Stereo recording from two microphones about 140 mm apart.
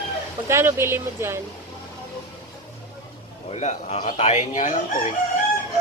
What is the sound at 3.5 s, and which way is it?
A man's voice, 50° left (ahead or behind).